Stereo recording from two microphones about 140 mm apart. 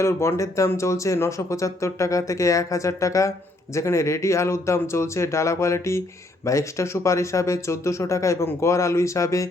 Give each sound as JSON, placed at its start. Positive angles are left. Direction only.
{"t": 0.0, "sound": "speech", "side_deg": 20}